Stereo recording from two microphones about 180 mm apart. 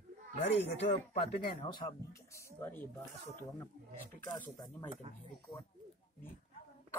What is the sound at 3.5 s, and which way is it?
Speech, 10° left (ahead or behind).